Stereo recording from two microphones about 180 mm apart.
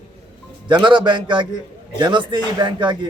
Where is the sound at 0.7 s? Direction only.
25° right (ahead or behind).